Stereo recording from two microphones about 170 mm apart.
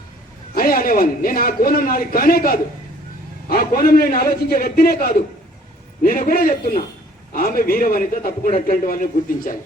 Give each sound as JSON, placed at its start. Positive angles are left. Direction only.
{"t": 0.5, "sound": "a man's voice", "side_deg": 60}